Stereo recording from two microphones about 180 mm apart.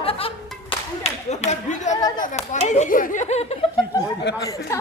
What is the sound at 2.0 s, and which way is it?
Speech, 20° left (ahead or behind).